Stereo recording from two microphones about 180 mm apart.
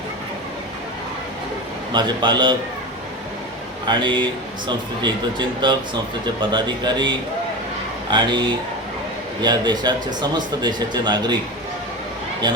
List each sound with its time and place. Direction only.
1.9 s speech: 25° right (ahead or behind)
3.8 s speech: 25° right (ahead or behind)
8.1 s speech: 25° right (ahead or behind)